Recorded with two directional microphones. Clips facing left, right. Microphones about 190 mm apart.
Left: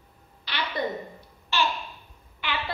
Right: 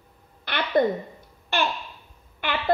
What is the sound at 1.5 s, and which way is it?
Babbling, 55° right (ahead or behind).